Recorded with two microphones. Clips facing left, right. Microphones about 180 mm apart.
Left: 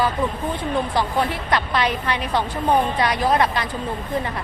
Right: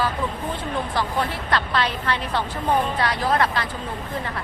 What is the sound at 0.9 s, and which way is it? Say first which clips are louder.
A woman's voice: left 3 dB; 15° left (ahead or behind).